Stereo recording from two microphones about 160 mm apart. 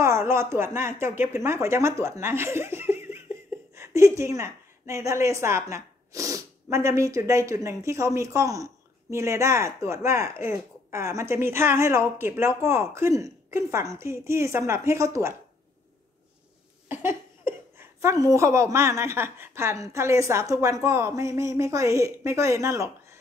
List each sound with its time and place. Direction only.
0.0 s a woman's voice: 15° right (ahead or behind)
16.9 s a woman's voice: 15° right (ahead or behind)